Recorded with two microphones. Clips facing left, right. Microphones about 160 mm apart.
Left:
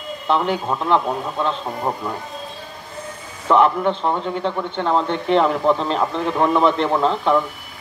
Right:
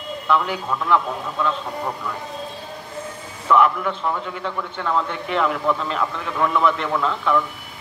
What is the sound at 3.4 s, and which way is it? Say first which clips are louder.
A man's voice: left 2 dB; 30° left (ahead or behind).